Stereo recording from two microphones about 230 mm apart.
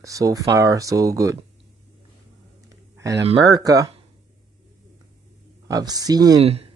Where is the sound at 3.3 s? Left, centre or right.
Centre.